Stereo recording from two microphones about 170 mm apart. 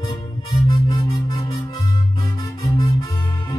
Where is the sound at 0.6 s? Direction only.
20° left (ahead or behind).